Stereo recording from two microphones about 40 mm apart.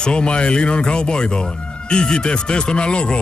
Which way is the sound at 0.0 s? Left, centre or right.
Left.